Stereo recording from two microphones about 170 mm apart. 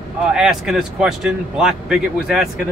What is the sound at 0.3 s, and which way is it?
Speech, 5° right (ahead or behind).